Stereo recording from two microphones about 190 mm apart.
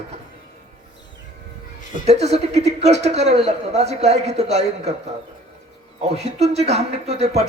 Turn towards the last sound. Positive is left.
turn(degrees=-35)  # may be behind; listen again after turning